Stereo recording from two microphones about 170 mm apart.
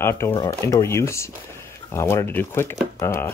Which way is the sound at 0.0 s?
15° left (ahead or behind).